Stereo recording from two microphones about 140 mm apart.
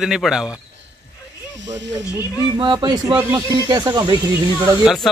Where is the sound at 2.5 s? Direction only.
35° right (ahead or behind).